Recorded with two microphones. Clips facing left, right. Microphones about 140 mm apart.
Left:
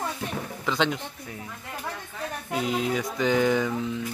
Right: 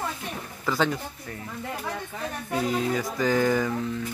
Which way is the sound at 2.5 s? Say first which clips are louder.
Right 1 dB; 15° left (ahead or behind).